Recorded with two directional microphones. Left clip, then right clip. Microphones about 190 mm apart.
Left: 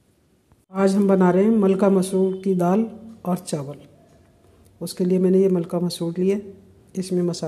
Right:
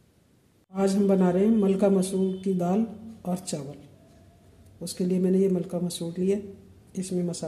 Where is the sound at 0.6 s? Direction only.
25° left (ahead or behind).